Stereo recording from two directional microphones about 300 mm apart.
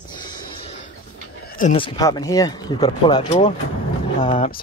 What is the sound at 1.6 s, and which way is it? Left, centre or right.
Speech, centre.